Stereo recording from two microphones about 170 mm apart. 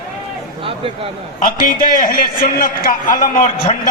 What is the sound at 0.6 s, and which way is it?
Speech, 30° right (ahead or behind).